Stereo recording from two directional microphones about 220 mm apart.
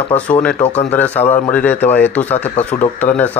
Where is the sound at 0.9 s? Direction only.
10° left (ahead or behind).